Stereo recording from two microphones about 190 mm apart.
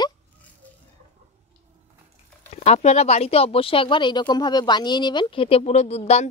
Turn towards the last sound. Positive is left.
turn(degrees=35)  # may be behind; listen again after turning